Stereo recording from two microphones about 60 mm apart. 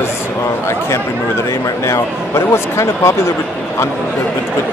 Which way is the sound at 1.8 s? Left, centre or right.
Left.